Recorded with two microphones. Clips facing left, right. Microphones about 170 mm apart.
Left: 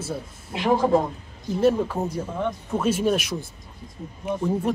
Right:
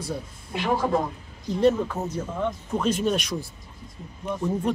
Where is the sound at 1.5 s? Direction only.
5° left (ahead or behind).